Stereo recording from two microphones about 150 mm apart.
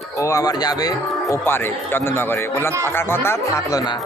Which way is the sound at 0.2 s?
20° left (ahead or behind).